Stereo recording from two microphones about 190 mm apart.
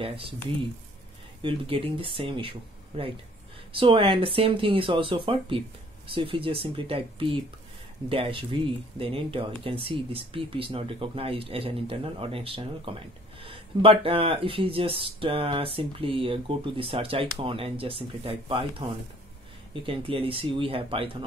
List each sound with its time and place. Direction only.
0.0 s speech: 30° right (ahead or behind)
1.4 s speech: 30° right (ahead or behind)